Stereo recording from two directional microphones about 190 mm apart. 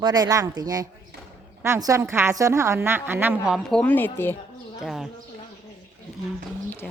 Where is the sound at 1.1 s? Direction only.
60° right (ahead or behind).